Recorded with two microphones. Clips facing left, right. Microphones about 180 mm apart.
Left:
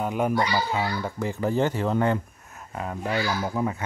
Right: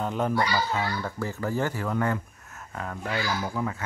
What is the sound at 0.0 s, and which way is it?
A child's voice, 10° left (ahead or behind).